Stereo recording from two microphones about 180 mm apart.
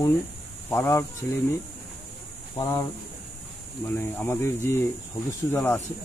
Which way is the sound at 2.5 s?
15° left (ahead or behind).